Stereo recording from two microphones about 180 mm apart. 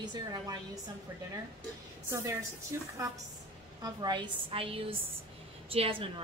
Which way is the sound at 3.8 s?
25° right (ahead or behind).